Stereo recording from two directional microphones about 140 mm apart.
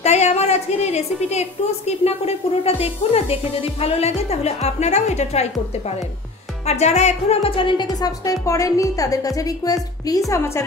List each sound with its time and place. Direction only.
0.0 s a woman's voice: 50° left (ahead or behind); by 10.6 s 20° left (ahead or behind)